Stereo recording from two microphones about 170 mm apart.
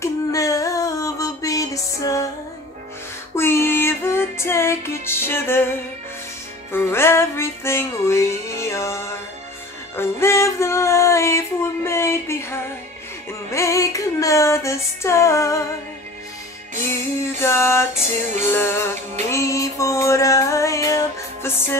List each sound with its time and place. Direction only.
0.0 s a sound: 20° left (ahead or behind)
3.3 s music: 15° left (ahead or behind)
17.4 s music: 15° left (ahead or behind)